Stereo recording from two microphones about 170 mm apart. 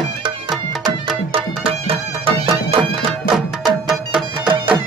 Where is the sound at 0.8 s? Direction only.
35° right (ahead or behind).